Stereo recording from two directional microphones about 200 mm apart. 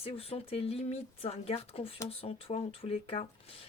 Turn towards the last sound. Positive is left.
turn(degrees=30)  # may be behind; listen again after turning